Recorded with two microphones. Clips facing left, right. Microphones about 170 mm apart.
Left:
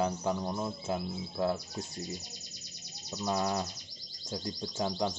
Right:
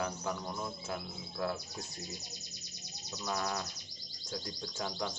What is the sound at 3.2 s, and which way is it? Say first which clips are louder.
Speech: left 5 dB; 25° left (ahead or behind).